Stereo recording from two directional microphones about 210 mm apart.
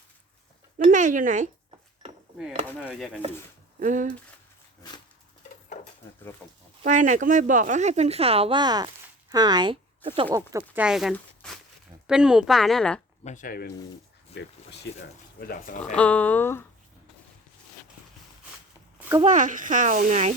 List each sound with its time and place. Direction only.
0.8 s speech: 35° right (ahead or behind)
2.6 s a woman's voice: 5° left (ahead or behind)
3.8 s speech: 35° right (ahead or behind)
5.6 s a sound: 35° left (ahead or behind)
6.4 s a woman's voice: 5° left (ahead or behind)
6.8 s speech: 35° right (ahead or behind); by 10.8 s 15° right (ahead or behind)
10.8 s a woman's voice: centre (ahead or behind)
13.2 s speech: 40° left (ahead or behind)
15.4 s speech: 45° left (ahead or behind)
16.0 s speech: 5° left (ahead or behind)
18.9 s a sound: 10° right (ahead or behind)
19.2 s speech: 35° right (ahead or behind)